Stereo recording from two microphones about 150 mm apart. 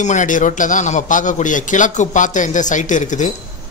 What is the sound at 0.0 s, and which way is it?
A man's voice, 55° left (ahead or behind).